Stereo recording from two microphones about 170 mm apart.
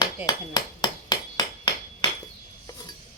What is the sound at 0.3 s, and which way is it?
Hammer, 25° left (ahead or behind).